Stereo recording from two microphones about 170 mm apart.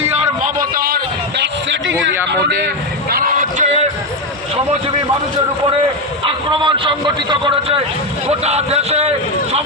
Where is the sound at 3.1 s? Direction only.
55° right (ahead or behind).